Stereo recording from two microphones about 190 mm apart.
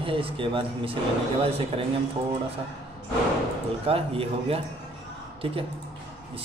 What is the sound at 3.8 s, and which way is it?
Speech, 30° right (ahead or behind).